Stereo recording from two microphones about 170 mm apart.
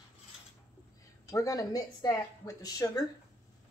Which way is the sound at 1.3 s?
20° left (ahead or behind).